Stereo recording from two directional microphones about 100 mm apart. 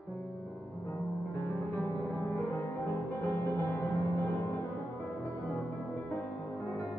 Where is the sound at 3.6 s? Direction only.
30° left (ahead or behind).